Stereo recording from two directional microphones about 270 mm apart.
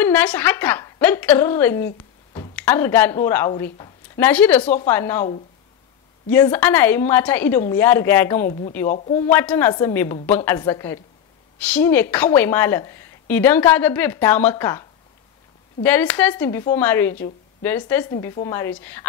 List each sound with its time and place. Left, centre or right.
0.0 s speech: centre
8.8 s speech: left
9.2 s speech: centre